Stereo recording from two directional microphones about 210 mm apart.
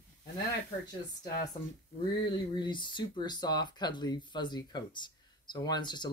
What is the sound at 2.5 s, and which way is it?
Speech, 20° left (ahead or behind).